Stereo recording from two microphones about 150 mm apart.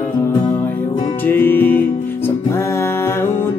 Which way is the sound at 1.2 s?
15° left (ahead or behind).